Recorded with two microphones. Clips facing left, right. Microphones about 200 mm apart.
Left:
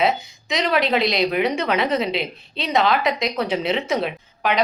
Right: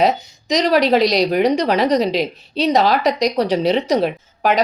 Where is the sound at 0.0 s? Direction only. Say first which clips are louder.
Right 4 dB; 40° right (ahead or behind).